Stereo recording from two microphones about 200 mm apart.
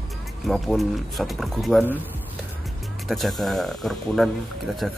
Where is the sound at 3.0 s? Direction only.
Centre (ahead or behind).